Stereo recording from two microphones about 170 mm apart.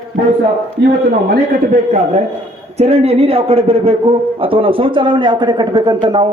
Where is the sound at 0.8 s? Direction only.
85° right.